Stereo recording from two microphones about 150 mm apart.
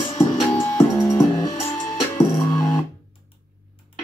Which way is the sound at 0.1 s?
20° left (ahead or behind).